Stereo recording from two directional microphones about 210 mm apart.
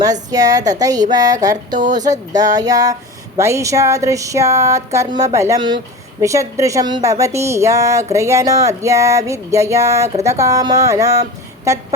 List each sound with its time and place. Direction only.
0.0 s speech: 15° right (ahead or behind)